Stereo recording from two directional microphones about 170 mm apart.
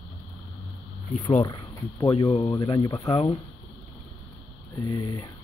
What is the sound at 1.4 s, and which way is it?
Speech, 25° left (ahead or behind).